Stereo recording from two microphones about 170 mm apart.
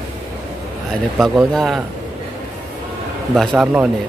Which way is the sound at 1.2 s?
Centre (ahead or behind).